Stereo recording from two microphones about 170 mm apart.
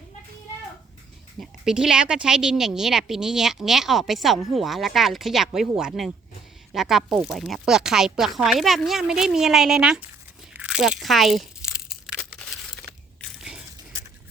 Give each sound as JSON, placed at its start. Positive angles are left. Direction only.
{"t": 1.4, "sound": "speech", "side_deg": -5}
{"t": 10.5, "sound": "crunch", "side_deg": -5}
{"t": 12.2, "sound": "a sound", "side_deg": 0}